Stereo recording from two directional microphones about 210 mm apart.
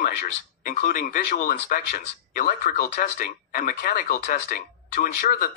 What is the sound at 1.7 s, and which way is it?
Speech, 40° left (ahead or behind).